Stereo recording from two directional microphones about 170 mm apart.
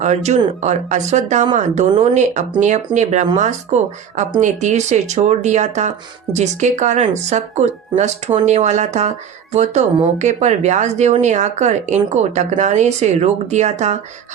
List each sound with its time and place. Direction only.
0.0 s speech: 40° right (ahead or behind)